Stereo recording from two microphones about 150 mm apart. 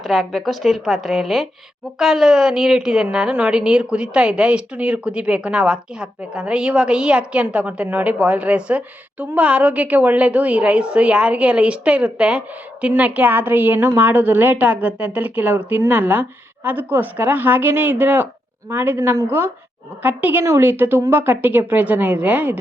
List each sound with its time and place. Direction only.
0.0 s a woman's voice: centre (ahead or behind)